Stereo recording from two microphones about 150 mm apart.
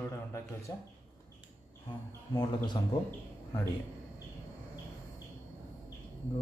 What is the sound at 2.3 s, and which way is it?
Speech, 30° left (ahead or behind).